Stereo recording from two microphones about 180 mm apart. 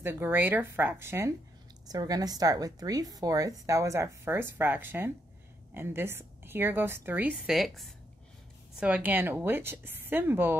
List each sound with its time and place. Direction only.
0.0 s a woman's voice: 15° right (ahead or behind)